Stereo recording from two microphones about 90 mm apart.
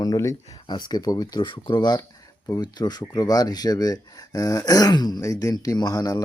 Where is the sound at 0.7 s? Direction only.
55° left (ahead or behind).